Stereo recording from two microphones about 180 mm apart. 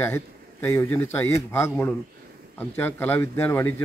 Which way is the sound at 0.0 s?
15° left (ahead or behind).